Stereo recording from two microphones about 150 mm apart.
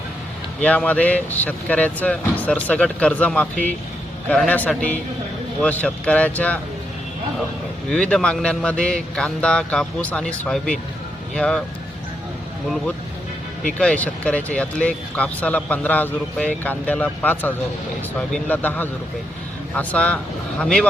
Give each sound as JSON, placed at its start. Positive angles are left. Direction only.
{"t": 0.6, "sound": "speech", "side_deg": 10}
{"t": 7.9, "sound": "speech", "side_deg": 5}
{"t": 13.7, "sound": "speech", "side_deg": 10}